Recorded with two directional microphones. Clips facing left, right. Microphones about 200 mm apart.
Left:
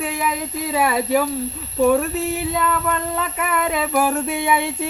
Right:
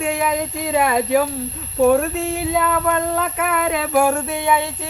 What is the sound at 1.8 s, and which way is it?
Speech, centre (ahead or behind).